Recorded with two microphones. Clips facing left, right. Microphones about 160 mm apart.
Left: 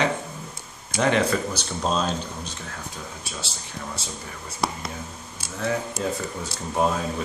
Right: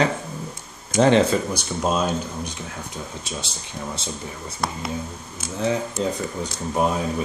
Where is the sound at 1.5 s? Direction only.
10° right (ahead or behind).